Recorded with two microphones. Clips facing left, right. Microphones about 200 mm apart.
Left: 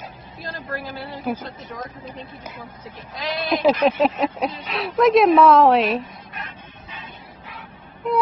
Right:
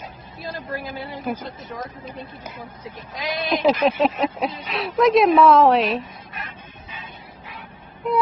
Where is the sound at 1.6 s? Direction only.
Centre (ahead or behind).